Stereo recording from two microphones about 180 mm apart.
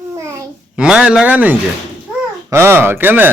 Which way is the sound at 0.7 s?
5° right (ahead or behind).